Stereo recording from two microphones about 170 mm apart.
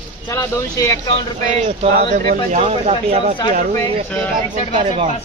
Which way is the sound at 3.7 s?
15° left (ahead or behind).